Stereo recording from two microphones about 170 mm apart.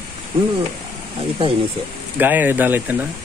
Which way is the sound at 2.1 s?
10° right (ahead or behind).